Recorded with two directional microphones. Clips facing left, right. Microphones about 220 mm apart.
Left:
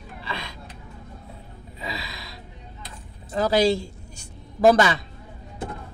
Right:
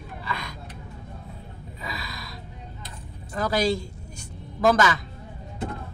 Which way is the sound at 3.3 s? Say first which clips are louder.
Left 4 dB; 25° left (ahead or behind).